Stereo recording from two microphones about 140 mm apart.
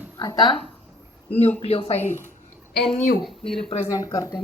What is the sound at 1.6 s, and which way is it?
Speech, 45° left (ahead or behind).